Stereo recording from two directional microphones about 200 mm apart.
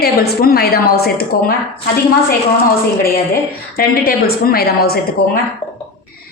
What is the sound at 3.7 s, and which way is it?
A woman's voice, 50° left (ahead or behind).